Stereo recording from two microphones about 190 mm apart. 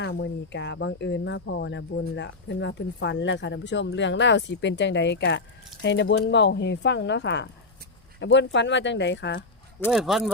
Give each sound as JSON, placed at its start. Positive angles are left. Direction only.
{"t": 0.0, "sound": "speech", "side_deg": 65}
{"t": 9.9, "sound": "speech", "side_deg": 0}